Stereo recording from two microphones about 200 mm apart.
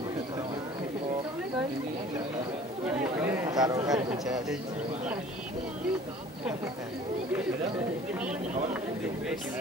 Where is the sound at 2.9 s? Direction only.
5° right (ahead or behind).